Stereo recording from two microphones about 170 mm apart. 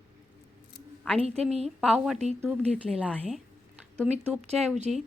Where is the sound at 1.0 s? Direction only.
5° left (ahead or behind).